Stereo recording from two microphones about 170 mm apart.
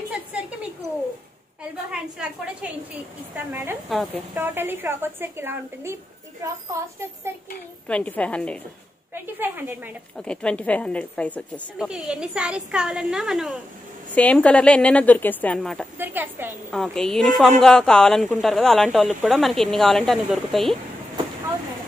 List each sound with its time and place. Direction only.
1.6 s a woman's voice: 5° right (ahead or behind)
3.9 s a woman's voice: centre (ahead or behind)
4.4 s a woman's voice: 10° right (ahead or behind)
7.9 s a woman's voice: 5° left (ahead or behind)
9.1 s a woman's voice: 10° right (ahead or behind)
10.1 s a woman's voice: 5° left (ahead or behind)
11.9 s a woman's voice: 5° right (ahead or behind)
16.0 s a woman's voice: 10° right (ahead or behind)
16.7 s a woman's voice: 5° left (ahead or behind)